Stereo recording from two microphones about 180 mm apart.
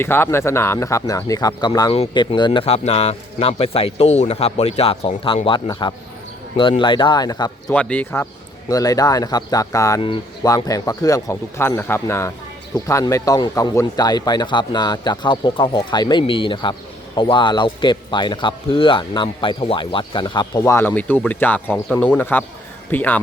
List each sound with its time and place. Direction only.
0.0 s speech: 15° left (ahead or behind)
7.7 s speech: 5° left (ahead or behind)
8.7 s speech: 20° left (ahead or behind)